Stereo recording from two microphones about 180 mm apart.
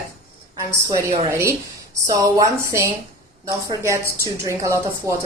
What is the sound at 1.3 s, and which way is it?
A woman's voice, 15° right (ahead or behind).